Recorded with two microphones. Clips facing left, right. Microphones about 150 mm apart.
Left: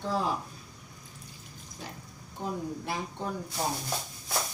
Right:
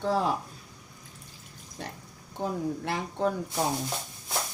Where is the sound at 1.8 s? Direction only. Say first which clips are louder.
Right 4 dB; 65° right (ahead or behind).